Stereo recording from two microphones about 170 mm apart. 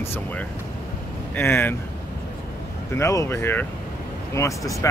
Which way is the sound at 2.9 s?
15° left (ahead or behind).